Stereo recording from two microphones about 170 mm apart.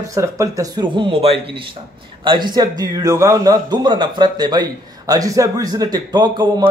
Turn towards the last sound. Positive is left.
turn(degrees=-25)  # may be behind; listen again after turning